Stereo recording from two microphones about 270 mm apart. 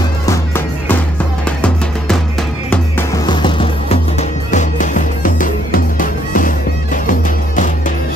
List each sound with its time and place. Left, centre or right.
2.7 s music: centre; by 7.0 s left